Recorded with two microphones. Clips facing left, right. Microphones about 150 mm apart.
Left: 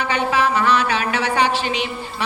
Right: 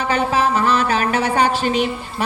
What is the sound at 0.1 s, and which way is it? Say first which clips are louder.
A woman's voice: right 2 dB; 40° right (ahead or behind).